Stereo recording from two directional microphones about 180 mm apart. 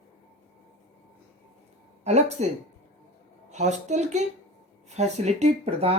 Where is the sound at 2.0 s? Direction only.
40° right (ahead or behind).